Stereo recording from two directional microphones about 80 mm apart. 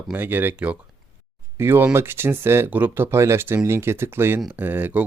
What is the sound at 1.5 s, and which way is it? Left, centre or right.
Speech, right.